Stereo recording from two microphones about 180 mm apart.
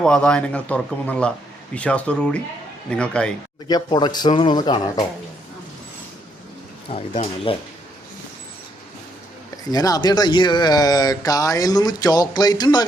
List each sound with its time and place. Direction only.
0.0 s a man's voice: 5° left (ahead or behind)
3.7 s speech: 20° left (ahead or behind)
6.8 s speech: 30° left (ahead or behind)
9.6 s speech: 20° left (ahead or behind)